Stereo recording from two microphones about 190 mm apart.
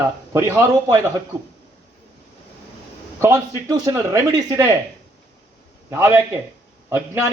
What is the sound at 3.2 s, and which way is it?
A man's voice, 15° right (ahead or behind).